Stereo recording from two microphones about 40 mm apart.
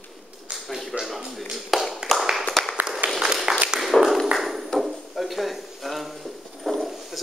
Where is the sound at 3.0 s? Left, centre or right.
Right.